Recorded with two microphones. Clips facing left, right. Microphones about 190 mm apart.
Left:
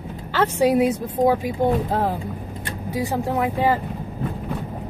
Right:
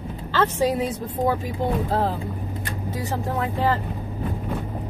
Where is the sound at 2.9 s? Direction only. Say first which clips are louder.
Left 5 dB; 10° left (ahead or behind).